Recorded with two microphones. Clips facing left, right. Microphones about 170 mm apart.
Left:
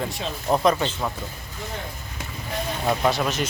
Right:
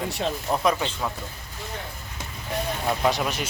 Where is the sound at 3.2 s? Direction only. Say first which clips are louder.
Left 3 dB; 10° right (ahead or behind).